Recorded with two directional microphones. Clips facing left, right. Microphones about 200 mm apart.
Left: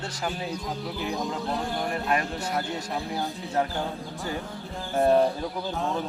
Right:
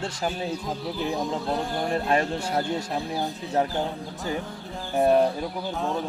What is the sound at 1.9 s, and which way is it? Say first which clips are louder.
Speech: right 5 dB; 30° right (ahead or behind).